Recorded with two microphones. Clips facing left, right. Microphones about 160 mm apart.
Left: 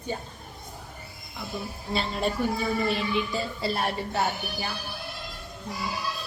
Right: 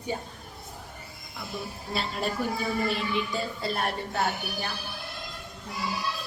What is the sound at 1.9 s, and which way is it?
A woman's voice, centre (ahead or behind).